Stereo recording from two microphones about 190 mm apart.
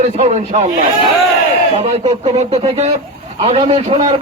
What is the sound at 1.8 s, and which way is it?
A man's voice, 30° right (ahead or behind).